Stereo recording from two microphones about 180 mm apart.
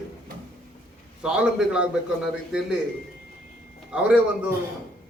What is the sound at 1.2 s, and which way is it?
Speech, 5° right (ahead or behind).